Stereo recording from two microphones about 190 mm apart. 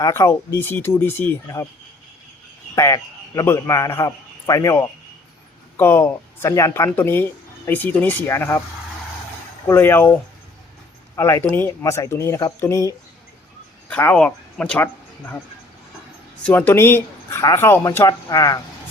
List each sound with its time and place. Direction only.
0.0 s speech: 15° left (ahead or behind)
2.7 s a man's voice: 15° left (ahead or behind)
9.6 s speech: 10° left (ahead or behind)
11.2 s speech: 15° left (ahead or behind)
13.9 s speech: 5° left (ahead or behind)
16.4 s speech: 10° left (ahead or behind)